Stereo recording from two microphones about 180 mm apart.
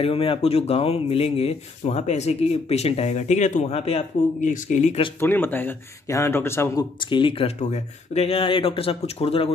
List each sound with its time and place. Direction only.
0.0 s speech: 30° left (ahead or behind)
5.2 s speech: 10° left (ahead or behind); by 9.5 s 30° left (ahead or behind)